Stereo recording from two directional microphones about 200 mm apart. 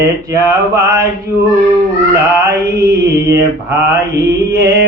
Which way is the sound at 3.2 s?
15° right (ahead or behind).